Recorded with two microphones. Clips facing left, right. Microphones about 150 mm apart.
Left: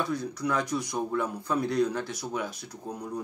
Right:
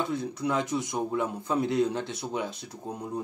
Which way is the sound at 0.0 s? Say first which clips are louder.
Right 1 dB; 25° right (ahead or behind).